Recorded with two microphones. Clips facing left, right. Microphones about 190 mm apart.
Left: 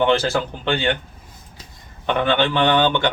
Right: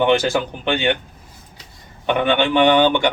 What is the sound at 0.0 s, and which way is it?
Speech, 15° right (ahead or behind).